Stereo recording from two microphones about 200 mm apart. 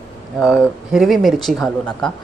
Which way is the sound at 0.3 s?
Centre (ahead or behind).